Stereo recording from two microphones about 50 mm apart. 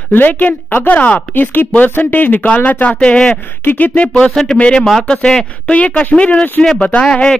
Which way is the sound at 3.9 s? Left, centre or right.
Left.